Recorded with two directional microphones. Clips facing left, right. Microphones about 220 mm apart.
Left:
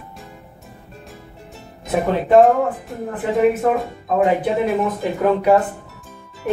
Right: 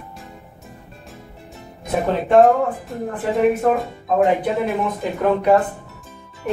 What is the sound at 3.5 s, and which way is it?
Speech, centre (ahead or behind).